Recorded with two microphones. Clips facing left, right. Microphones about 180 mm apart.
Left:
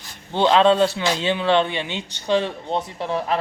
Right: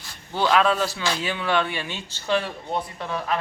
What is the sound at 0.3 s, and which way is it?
A man's voice, 25° left (ahead or behind).